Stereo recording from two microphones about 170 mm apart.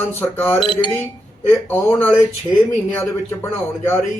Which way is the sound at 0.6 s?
30° left (ahead or behind).